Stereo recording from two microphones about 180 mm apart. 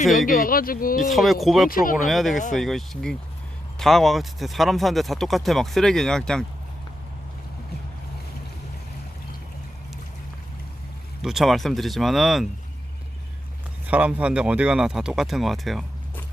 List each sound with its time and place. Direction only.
0.0 s speech: 50° left (ahead or behind)
1.0 s speech: centre (ahead or behind)
1.7 s speech: 50° left (ahead or behind)
2.0 s speech: centre (ahead or behind)
11.2 s speech: centre (ahead or behind)
13.8 s speech: 5° right (ahead or behind)